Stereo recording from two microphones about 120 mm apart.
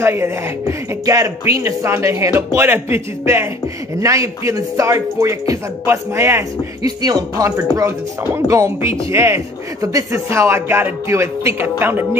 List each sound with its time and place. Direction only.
0.0 s speech: 20° right (ahead or behind)